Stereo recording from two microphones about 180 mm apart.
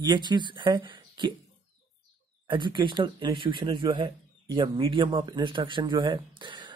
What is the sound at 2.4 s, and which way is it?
Speech, 25° right (ahead or behind).